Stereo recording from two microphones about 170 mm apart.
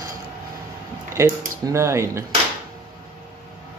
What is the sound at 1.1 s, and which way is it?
Speech, 15° right (ahead or behind).